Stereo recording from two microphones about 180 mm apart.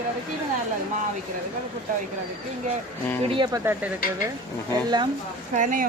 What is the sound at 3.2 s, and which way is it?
Speech, 25° right (ahead or behind).